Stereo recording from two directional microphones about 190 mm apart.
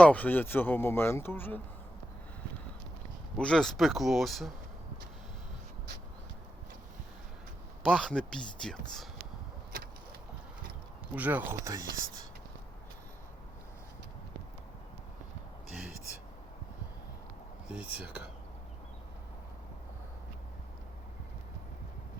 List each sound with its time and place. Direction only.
0.0 s speech: 10° left (ahead or behind)
3.3 s speech: 5° left (ahead or behind)
7.9 s speech: centre (ahead or behind)
11.1 s speech: 10° right (ahead or behind)
17.7 s speech: 5° right (ahead or behind)